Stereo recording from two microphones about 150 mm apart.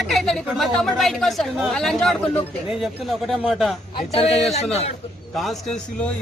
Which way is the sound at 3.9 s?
40° left (ahead or behind).